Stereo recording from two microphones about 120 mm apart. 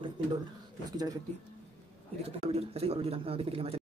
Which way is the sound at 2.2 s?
60° right (ahead or behind).